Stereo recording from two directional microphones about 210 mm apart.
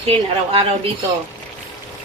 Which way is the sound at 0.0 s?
30° right (ahead or behind).